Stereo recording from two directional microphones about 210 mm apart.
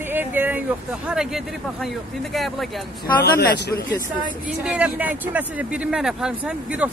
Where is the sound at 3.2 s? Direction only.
50° left (ahead or behind).